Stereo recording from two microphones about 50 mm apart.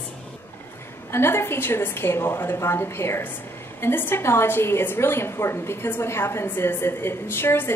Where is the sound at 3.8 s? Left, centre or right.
Left.